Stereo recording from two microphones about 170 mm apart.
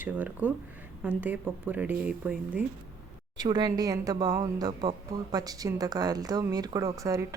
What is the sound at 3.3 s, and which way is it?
Speech, 25° right (ahead or behind).